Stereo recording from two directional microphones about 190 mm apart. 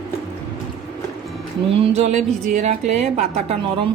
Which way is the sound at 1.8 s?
35° right (ahead or behind).